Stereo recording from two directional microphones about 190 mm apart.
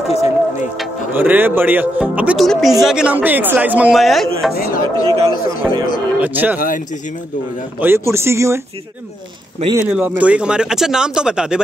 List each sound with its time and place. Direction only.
0.1 s a sound: 35° left (ahead or behind)
1.1 s speech: 10° right (ahead or behind)
4.6 s speech: 45° left (ahead or behind)
5.0 s speech: 30° right (ahead or behind)
6.1 s speech: 10° right (ahead or behind)
7.8 s speech: 10° right (ahead or behind)
9.8 s speech: 5° right (ahead or behind)